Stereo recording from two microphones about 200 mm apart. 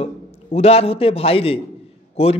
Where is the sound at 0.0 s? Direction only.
30° left (ahead or behind).